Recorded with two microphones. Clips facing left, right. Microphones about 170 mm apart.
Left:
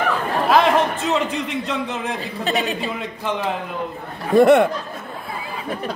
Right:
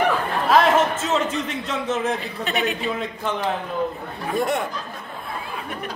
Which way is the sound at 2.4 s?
35° left (ahead or behind).